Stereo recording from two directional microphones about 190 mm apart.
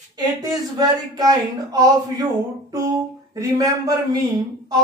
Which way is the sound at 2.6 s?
15° right (ahead or behind).